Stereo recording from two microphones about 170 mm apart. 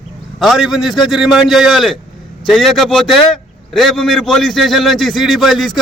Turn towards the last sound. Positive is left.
turn(degrees=0)  # may be behind; listen again after turning